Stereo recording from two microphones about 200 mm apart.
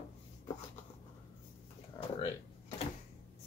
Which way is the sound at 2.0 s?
20° left (ahead or behind).